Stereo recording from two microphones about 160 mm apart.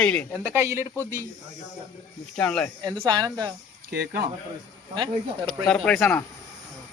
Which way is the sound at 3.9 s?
85° right.